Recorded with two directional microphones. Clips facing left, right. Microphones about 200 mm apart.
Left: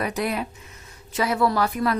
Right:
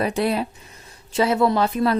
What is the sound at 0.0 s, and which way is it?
A woman's voice, 30° right (ahead or behind).